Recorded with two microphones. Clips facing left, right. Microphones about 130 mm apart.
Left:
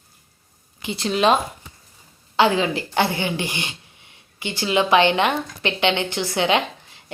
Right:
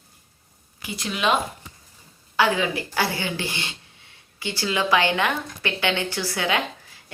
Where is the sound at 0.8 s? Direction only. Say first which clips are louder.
Left 7 dB; 25° left (ahead or behind).